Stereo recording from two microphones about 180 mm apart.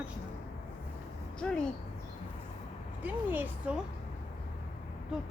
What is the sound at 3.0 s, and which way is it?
Speech, 10° right (ahead or behind).